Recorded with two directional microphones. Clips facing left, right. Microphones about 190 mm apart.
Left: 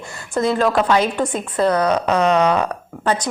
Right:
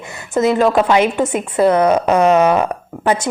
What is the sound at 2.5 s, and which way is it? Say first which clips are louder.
Speech: right 3 dB; 20° right (ahead or behind).